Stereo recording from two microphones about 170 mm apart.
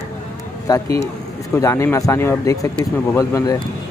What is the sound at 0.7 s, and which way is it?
Speech, 20° left (ahead or behind).